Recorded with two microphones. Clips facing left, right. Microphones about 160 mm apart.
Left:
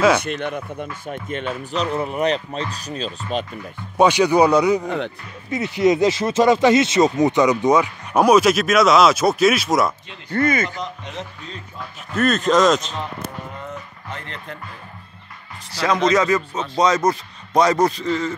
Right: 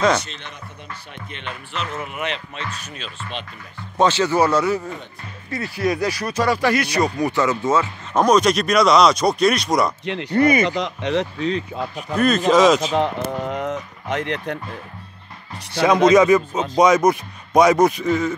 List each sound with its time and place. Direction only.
0.2 s speech: 55° left (ahead or behind)
1.8 s speech: 35° left (ahead or behind)
3.9 s speech: 15° left (ahead or behind)
4.8 s speech: 80° left
5.5 s speech: 20° left (ahead or behind); by 9.9 s centre (ahead or behind)
10.0 s speech: 70° right (ahead or behind)
10.3 s speech: 15° right (ahead or behind)
10.8 s speech: 75° right (ahead or behind)
12.2 s speech: centre (ahead or behind)
12.9 s speech: 90° right
15.7 s speech: 20° right (ahead or behind)